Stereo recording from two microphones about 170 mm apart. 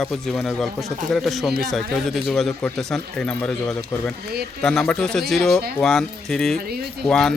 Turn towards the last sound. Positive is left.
turn(degrees=5)  # may be behind; listen again after turning